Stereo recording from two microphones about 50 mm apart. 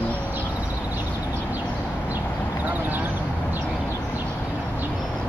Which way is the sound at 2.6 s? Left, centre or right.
Right.